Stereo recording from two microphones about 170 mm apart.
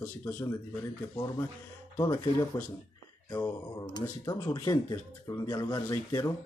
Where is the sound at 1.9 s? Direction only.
20° left (ahead or behind).